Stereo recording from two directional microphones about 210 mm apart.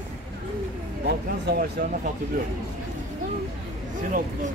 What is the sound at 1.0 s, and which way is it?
Speech, 50° right (ahead or behind).